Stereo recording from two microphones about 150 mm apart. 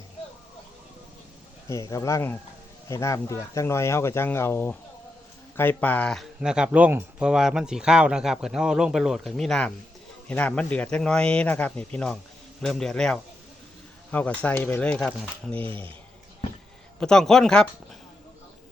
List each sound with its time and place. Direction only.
1.7 s speech: 20° left (ahead or behind)
17.0 s speech: 5° left (ahead or behind)